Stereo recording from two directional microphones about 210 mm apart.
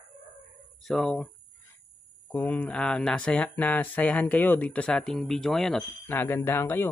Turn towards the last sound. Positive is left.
turn(degrees=10)  # may be behind; listen again after turning